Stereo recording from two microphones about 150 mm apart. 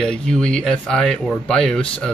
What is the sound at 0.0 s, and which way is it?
Speech, 5° left (ahead or behind).